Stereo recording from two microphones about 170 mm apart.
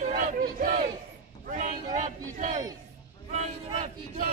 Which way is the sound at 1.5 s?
50° right (ahead or behind).